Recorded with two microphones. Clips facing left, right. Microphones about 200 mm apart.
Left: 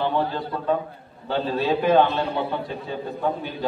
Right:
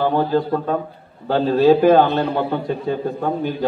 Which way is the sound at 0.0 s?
50° right (ahead or behind).